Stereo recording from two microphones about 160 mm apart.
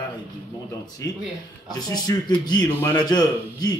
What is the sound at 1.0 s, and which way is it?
A man's voice, 20° left (ahead or behind).